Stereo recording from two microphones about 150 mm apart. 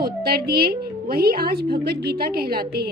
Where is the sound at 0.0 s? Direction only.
90° right.